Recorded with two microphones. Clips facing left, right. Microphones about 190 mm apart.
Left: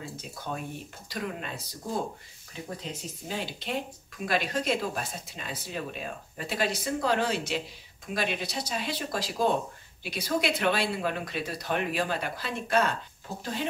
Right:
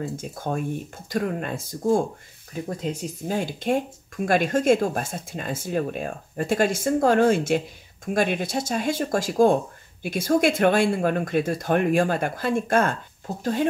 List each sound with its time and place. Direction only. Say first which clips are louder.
0.0 s speech: right 9 dB; 50° right (ahead or behind)